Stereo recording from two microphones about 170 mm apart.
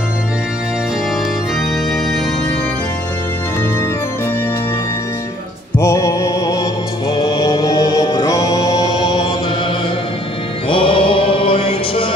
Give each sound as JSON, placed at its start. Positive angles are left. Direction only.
{"t": 5.8, "sound": "music", "side_deg": 15}
{"t": 10.7, "sound": "music", "side_deg": 30}